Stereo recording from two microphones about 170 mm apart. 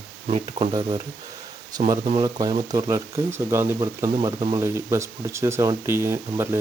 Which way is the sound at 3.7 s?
30° right (ahead or behind).